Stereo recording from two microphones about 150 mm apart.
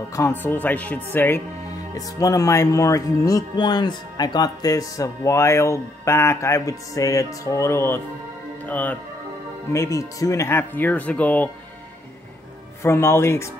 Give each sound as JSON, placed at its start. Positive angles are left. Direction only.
{"t": 0.1, "sound": "speech", "side_deg": 15}
{"t": 2.0, "sound": "speech", "side_deg": 25}
{"t": 9.9, "sound": "speech", "side_deg": 20}
{"t": 12.8, "sound": "speech", "side_deg": 15}